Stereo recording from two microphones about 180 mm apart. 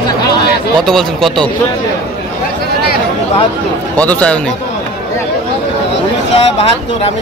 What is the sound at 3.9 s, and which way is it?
Speech, 10° left (ahead or behind).